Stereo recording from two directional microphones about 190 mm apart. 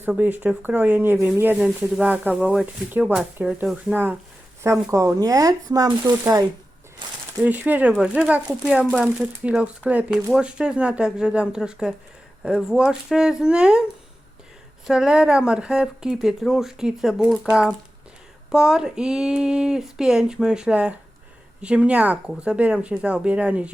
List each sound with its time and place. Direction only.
0.0 s speech: 10° right (ahead or behind)
7.4 s speech: 10° right (ahead or behind)
14.8 s speech: 5° right (ahead or behind)